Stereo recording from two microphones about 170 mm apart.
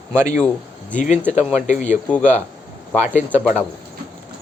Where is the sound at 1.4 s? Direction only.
5° right (ahead or behind).